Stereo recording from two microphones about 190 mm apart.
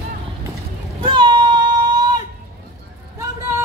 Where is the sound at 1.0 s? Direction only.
25° right (ahead or behind).